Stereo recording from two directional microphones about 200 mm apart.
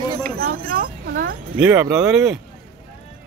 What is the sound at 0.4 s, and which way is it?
Speech, 45° right (ahead or behind).